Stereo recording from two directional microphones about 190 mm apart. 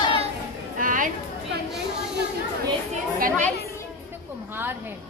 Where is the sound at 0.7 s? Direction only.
45° right (ahead or behind).